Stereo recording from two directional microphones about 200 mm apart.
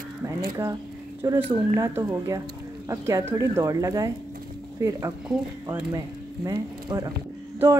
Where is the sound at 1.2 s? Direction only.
15° right (ahead or behind).